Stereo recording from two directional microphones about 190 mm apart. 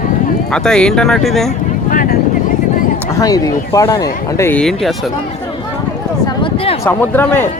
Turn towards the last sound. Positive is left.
turn(degrees=10)  # may be behind; listen again after turning